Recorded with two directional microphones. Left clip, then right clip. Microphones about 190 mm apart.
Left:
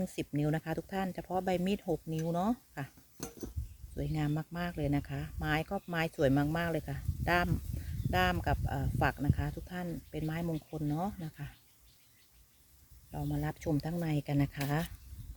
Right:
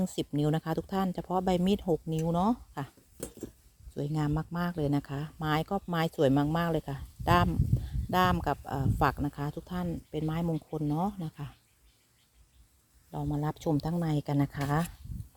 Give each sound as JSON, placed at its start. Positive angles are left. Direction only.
{"t": 0.0, "sound": "speech", "side_deg": -25}
{"t": 3.9, "sound": "speech", "side_deg": -20}
{"t": 13.1, "sound": "speech", "side_deg": -20}